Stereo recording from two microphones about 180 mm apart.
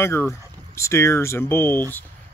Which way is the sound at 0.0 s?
15° left (ahead or behind).